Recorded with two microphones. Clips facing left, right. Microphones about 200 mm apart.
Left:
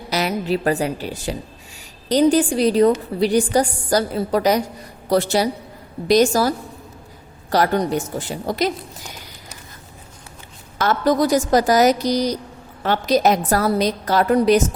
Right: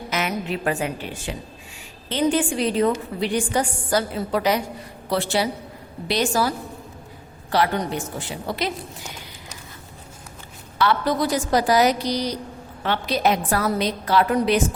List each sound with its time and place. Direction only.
0.1 s a woman's voice: 35° left (ahead or behind)
7.5 s a woman's voice: 40° left (ahead or behind)
10.8 s a woman's voice: 45° left (ahead or behind)